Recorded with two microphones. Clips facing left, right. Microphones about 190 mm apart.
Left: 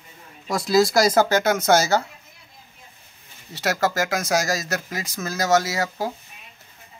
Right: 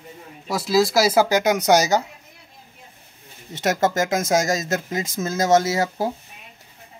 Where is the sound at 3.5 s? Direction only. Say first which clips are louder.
Right 2 dB; 20° right (ahead or behind).